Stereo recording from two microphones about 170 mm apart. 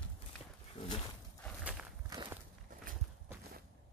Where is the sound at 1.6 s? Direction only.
5° right (ahead or behind).